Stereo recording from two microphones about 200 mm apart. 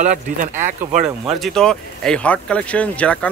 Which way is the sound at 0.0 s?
40° right (ahead or behind).